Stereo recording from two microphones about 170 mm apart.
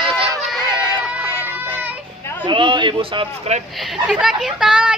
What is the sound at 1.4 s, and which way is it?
Child singing, 10° right (ahead or behind).